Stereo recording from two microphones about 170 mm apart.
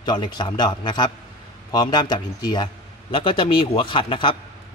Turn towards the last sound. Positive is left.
turn(degrees=30)  # may be behind; listen again after turning